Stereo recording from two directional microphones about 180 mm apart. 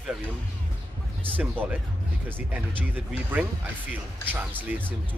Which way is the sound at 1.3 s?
10° right (ahead or behind).